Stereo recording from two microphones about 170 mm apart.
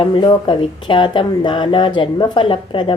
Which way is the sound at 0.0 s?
25° left (ahead or behind).